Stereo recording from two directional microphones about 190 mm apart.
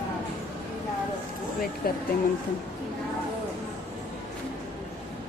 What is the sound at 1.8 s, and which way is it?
Speech, 50° left (ahead or behind).